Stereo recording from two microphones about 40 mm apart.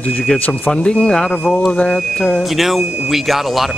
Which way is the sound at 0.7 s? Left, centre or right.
Centre.